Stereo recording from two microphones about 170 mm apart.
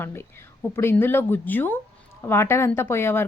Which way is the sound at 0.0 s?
15° left (ahead or behind).